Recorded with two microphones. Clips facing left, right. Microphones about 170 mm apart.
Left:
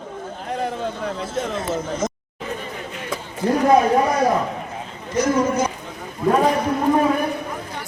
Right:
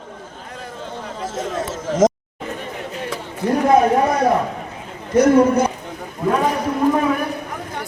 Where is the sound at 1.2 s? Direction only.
90° right.